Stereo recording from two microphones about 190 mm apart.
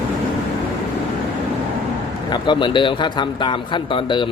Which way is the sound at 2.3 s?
25° left (ahead or behind).